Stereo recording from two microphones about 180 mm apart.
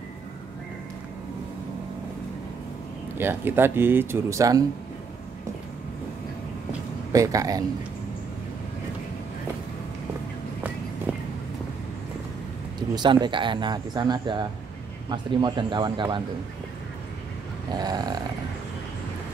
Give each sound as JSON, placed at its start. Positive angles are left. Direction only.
{"t": 3.2, "sound": "speech", "side_deg": -10}
{"t": 7.1, "sound": "speech", "side_deg": -20}
{"t": 12.9, "sound": "speech", "side_deg": -25}
{"t": 17.7, "sound": "speech", "side_deg": -20}